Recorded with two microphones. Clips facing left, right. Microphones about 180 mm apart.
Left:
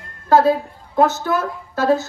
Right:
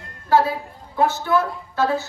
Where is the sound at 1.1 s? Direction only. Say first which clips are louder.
Right 1 dB; 45° left (ahead or behind).